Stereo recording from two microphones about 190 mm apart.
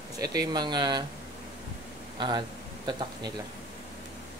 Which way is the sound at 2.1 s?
25° right (ahead or behind).